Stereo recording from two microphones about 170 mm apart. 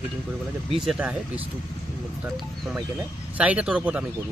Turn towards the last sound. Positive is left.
turn(degrees=-5)  # may be behind; listen again after turning